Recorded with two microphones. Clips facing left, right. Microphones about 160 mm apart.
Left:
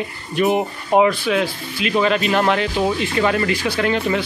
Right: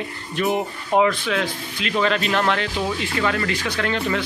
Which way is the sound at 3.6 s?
10° left (ahead or behind).